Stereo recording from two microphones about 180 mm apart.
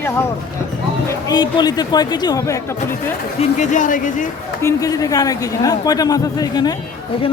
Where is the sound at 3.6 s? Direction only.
45° left (ahead or behind).